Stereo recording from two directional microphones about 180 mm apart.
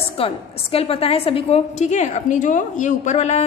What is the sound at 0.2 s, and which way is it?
A woman's voice, 30° left (ahead or behind).